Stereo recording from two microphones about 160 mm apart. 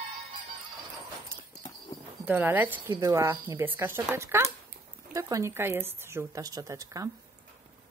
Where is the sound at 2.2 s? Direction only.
10° right (ahead or behind).